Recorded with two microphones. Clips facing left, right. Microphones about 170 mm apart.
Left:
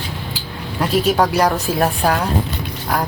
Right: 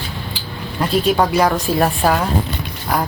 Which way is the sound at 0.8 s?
5° left (ahead or behind).